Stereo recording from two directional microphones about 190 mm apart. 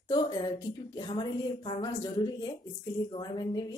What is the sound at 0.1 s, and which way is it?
Speech, 20° left (ahead or behind).